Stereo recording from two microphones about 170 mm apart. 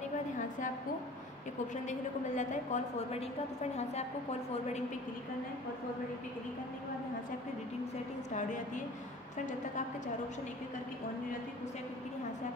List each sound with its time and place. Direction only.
1.9 s a woman's voice: 45° left (ahead or behind)